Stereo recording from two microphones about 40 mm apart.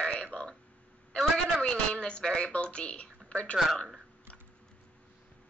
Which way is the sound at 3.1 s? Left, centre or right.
Left.